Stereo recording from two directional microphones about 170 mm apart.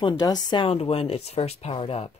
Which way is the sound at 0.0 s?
25° left (ahead or behind).